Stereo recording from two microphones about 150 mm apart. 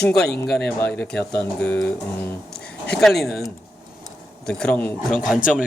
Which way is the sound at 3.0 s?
Centre (ahead or behind).